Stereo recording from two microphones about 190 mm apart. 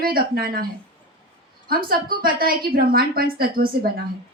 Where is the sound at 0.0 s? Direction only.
50° right (ahead or behind).